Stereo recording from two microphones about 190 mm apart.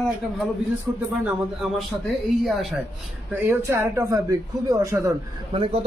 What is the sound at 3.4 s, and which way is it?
A man's voice, 15° right (ahead or behind).